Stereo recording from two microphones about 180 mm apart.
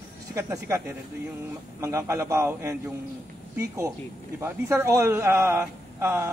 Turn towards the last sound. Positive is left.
turn(degrees=-15)  # may be behind; listen again after turning